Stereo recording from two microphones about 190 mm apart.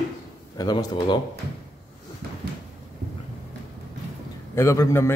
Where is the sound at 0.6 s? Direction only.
20° left (ahead or behind).